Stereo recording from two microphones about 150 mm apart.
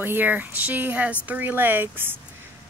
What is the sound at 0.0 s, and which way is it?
Speech, 10° right (ahead or behind).